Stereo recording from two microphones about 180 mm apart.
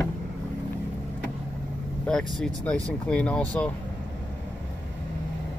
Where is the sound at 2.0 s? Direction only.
Centre (ahead or behind).